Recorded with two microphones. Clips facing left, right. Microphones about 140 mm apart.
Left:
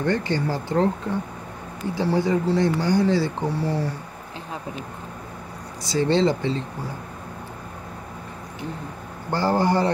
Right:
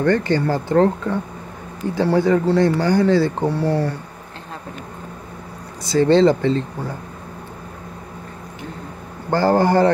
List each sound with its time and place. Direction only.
0.0 s speech: 55° right (ahead or behind)
5.9 s speech: 50° right (ahead or behind)
9.3 s speech: 50° right (ahead or behind)